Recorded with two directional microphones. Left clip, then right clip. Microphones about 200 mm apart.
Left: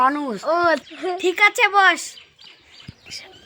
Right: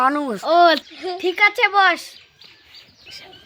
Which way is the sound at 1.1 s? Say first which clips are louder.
Even; centre (ahead or behind).